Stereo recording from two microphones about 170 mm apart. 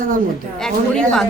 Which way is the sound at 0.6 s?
5° left (ahead or behind).